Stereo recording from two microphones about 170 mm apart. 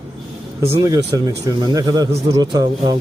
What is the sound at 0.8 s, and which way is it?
Speech, 20° right (ahead or behind).